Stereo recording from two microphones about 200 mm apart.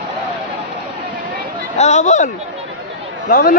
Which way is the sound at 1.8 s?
35° left (ahead or behind).